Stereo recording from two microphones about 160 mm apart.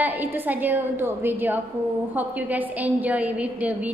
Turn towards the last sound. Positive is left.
turn(degrees=-10)  # may be behind; listen again after turning